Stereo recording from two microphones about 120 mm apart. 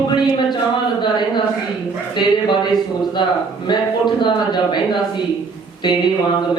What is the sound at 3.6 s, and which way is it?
A man's voice, 40° left (ahead or behind).